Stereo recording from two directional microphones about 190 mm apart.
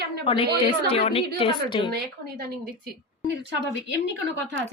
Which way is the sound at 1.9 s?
50° right (ahead or behind).